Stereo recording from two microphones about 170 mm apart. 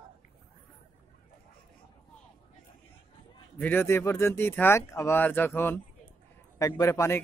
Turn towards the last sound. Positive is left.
turn(degrees=15)  # may be behind; listen again after turning